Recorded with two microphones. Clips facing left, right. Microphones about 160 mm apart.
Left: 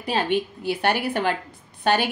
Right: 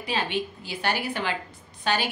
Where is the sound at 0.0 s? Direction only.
50° left (ahead or behind).